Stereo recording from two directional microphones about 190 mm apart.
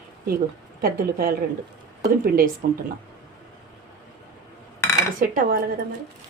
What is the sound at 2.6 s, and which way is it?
Speech, 50° right (ahead or behind).